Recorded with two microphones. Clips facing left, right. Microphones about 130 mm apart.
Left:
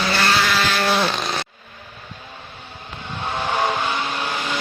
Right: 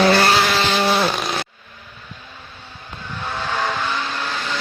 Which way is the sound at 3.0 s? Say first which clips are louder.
Left 2 dB; 20° left (ahead or behind).